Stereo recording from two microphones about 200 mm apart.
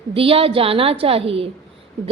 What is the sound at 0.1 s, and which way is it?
A woman's voice, 30° right (ahead or behind).